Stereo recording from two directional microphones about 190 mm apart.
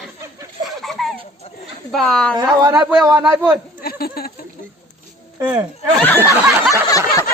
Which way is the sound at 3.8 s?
55° left (ahead or behind).